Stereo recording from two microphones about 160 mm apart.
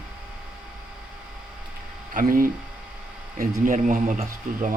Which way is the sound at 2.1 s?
60° right (ahead or behind).